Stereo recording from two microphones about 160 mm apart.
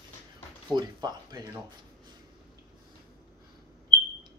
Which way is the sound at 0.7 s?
25° right (ahead or behind).